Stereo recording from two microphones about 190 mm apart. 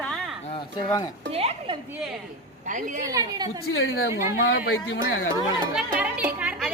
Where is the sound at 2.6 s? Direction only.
40° right (ahead or behind).